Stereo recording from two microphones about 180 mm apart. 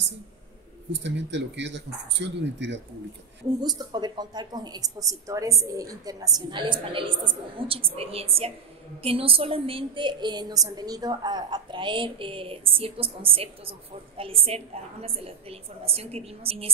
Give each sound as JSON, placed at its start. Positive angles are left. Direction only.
{"t": 0.9, "sound": "speech", "side_deg": -80}
{"t": 3.6, "sound": "a woman's voice", "side_deg": -25}